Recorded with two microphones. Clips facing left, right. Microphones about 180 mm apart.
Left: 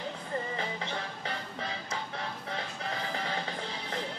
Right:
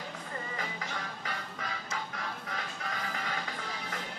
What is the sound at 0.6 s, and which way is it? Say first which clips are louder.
Music: left 3 dB; 30° left (ahead or behind).